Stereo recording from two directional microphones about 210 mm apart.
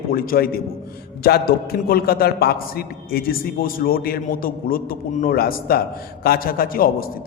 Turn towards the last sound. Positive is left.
turn(degrees=45)  # may be behind; listen again after turning